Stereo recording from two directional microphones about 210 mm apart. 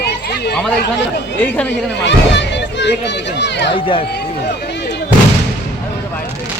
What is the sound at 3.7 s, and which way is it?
Speech, 25° left (ahead or behind).